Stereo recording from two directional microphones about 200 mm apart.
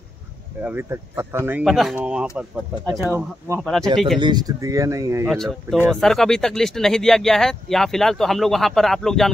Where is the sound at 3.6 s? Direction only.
5° left (ahead or behind).